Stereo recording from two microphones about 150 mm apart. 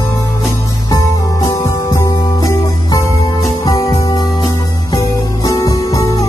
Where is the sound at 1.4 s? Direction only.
20° left (ahead or behind).